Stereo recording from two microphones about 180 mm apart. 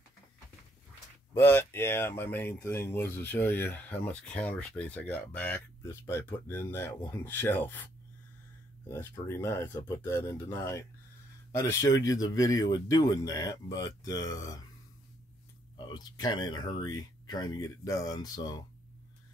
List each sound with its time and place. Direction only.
1.3 s speech: 10° left (ahead or behind)
15.8 s speech: 25° left (ahead or behind)